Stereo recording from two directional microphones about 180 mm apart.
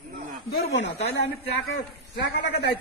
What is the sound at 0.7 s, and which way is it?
Speech, 70° left (ahead or behind).